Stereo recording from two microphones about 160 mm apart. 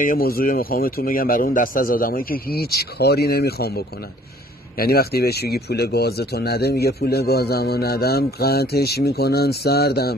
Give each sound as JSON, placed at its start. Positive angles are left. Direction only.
{"t": 0.0, "sound": "speech", "side_deg": 65}